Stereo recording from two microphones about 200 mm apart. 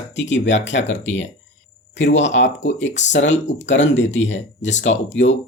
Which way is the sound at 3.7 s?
65° left (ahead or behind).